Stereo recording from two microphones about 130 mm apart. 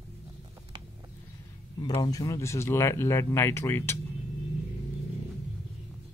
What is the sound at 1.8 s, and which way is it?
Speech, 25° left (ahead or behind).